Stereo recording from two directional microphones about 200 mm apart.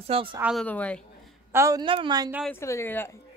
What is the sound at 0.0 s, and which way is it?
Speech, 25° right (ahead or behind).